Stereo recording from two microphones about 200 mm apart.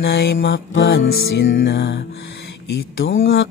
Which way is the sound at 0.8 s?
50° left (ahead or behind).